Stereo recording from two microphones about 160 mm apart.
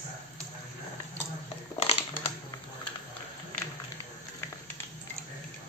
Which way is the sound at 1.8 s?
40° left (ahead or behind).